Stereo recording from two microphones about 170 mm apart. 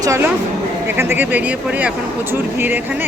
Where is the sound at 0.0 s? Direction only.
15° right (ahead or behind).